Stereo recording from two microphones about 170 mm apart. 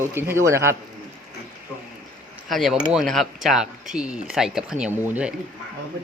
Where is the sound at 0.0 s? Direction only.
15° right (ahead or behind).